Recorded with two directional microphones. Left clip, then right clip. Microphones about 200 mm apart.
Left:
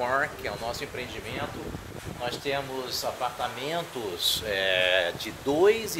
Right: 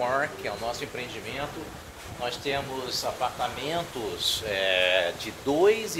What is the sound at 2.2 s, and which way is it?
Speech, 65° left (ahead or behind).